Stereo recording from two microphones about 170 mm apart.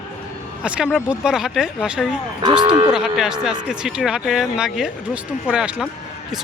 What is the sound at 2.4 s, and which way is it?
Speech, 25° right (ahead or behind).